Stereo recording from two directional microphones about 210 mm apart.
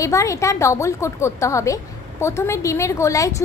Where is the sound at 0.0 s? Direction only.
15° left (ahead or behind).